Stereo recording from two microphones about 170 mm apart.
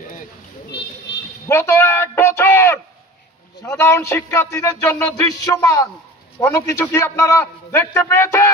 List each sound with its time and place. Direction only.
1.5 s a man's voice: 15° left (ahead or behind)